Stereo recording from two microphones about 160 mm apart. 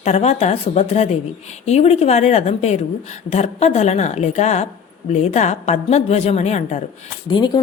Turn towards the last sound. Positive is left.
turn(degrees=30)  # may be behind; listen again after turning